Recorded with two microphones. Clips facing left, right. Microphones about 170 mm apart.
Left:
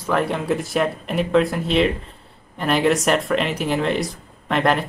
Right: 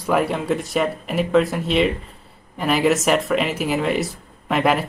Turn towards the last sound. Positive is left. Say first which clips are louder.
# even
turn(degrees=-5)  # may be behind; listen again after turning